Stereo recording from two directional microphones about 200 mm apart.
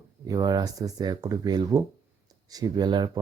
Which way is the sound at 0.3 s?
20° right (ahead or behind).